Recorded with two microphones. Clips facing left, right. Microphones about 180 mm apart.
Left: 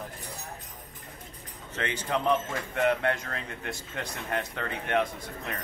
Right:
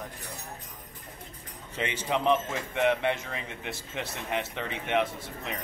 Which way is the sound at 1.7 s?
10° right (ahead or behind).